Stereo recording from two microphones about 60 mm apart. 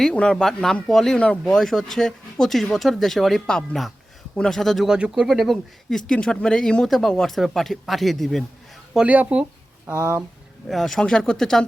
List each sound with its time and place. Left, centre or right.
0.0 s speech: centre
4.9 s speech: centre
5.5 s speech: centre
6.8 s speech: centre
9.0 s speech: right
10.7 s speech: centre